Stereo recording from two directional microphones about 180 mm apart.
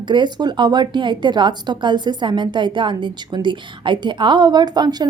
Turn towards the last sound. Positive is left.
turn(degrees=-25)  # may be behind; listen again after turning